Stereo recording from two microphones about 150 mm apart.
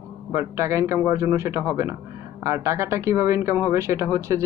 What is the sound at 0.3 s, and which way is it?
Speech, 20° right (ahead or behind).